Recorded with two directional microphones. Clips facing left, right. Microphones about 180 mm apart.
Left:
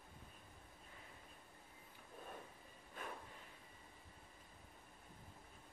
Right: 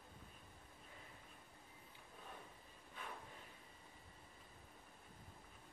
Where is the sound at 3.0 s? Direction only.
45° left (ahead or behind).